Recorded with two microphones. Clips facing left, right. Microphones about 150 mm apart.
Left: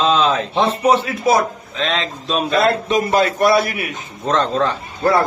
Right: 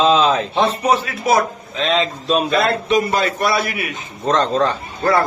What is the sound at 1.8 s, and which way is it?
Speech, centre (ahead or behind).